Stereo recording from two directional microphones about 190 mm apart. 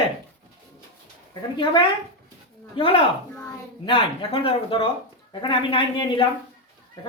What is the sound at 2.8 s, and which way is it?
Speech, 30° left (ahead or behind).